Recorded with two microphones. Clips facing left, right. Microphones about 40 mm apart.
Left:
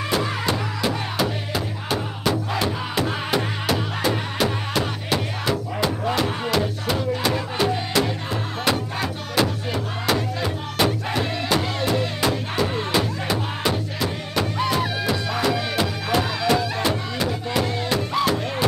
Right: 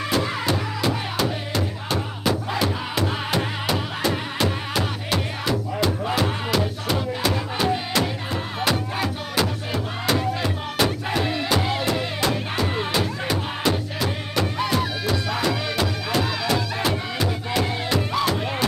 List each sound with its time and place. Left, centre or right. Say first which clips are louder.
0.1 s music: even; centre